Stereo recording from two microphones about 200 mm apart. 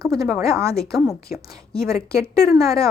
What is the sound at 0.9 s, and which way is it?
Speech, centre (ahead or behind).